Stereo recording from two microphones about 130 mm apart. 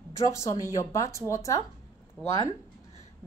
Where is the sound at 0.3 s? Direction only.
25° left (ahead or behind).